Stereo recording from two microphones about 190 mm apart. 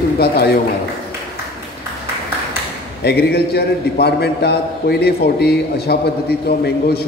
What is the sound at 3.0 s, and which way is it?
A man's voice, 55° left (ahead or behind).